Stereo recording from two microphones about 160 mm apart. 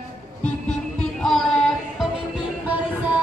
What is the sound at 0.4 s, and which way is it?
Music, 5° left (ahead or behind).